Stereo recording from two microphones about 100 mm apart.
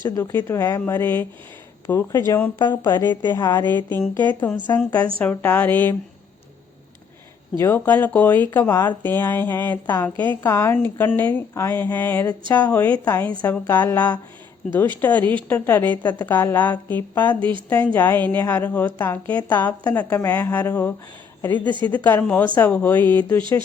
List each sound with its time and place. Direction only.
0.0 s a woman's voice: 35° left (ahead or behind)
2.6 s speech: 45° left (ahead or behind)
3.4 s a woman's voice: 20° left (ahead or behind)
7.6 s a woman's voice: 20° left (ahead or behind)
20.1 s a woman's voice: 25° left (ahead or behind)